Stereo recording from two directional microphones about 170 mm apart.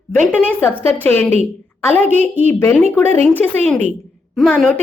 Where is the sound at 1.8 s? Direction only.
10° left (ahead or behind).